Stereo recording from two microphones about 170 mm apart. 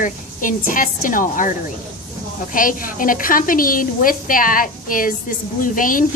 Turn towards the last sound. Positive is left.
turn(degrees=55)  # may be behind; listen again after turning